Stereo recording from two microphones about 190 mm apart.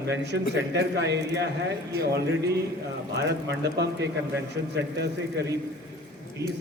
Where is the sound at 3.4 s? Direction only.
65° right (ahead or behind).